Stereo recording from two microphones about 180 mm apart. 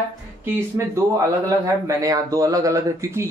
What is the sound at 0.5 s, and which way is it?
Speech, 15° right (ahead or behind).